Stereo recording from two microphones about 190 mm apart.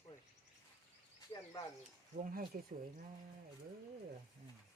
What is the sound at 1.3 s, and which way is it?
Speech, 20° left (ahead or behind).